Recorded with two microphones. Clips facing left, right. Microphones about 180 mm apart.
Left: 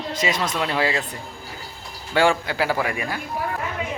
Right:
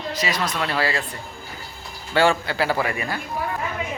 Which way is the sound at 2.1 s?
15° left (ahead or behind).